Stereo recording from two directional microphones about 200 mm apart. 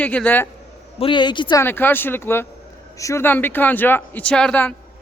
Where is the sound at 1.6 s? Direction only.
10° left (ahead or behind).